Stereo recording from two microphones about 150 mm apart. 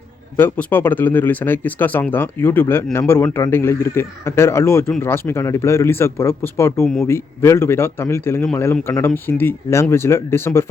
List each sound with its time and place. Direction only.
0.3 s speech: 15° left (ahead or behind)